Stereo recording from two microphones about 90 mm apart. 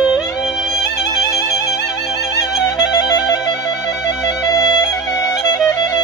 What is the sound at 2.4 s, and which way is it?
Music, 50° left (ahead or behind).